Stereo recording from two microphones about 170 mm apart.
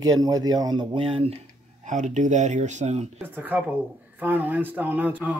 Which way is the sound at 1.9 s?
45° right (ahead or behind).